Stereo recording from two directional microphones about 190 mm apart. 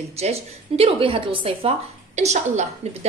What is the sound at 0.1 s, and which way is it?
A woman's voice, 35° right (ahead or behind).